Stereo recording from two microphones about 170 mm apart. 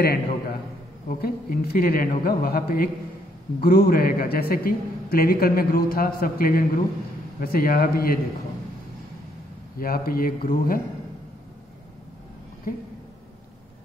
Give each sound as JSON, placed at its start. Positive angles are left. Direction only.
{"t": 0.0, "sound": "a man's voice", "side_deg": 65}
{"t": 9.8, "sound": "a man's voice", "side_deg": 60}
{"t": 12.7, "sound": "speech", "side_deg": 55}